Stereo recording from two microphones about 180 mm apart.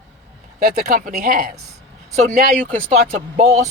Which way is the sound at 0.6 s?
50° right (ahead or behind).